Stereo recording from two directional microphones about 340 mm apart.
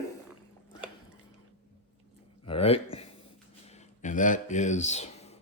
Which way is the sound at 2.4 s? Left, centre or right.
Centre.